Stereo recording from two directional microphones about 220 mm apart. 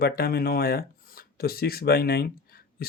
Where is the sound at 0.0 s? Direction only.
45° left (ahead or behind).